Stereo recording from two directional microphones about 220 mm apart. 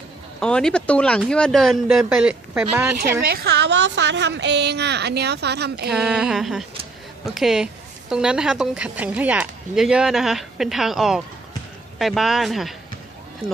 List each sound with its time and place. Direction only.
0.3 s a woman's voice: 5° left (ahead or behind)
3.2 s a woman's voice: 45° right (ahead or behind)
5.9 s a woman's voice: 5° right (ahead or behind)